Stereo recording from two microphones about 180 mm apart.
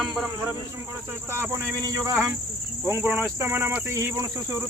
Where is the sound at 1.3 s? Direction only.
15° right (ahead or behind).